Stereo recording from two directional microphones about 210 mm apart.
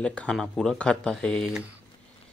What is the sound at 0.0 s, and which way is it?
Speech, 5° left (ahead or behind).